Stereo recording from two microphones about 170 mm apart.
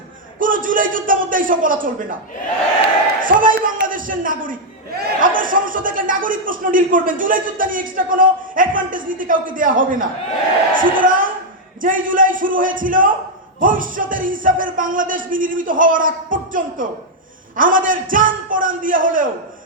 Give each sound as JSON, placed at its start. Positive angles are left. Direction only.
{"t": 0.3, "sound": "a man's voice", "side_deg": -55}
{"t": 3.2, "sound": "a man's voice", "side_deg": -55}